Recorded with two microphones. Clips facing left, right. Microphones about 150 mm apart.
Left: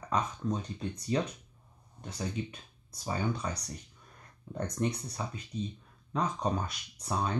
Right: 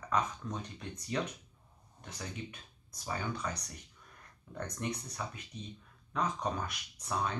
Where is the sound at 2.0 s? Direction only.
30° left (ahead or behind).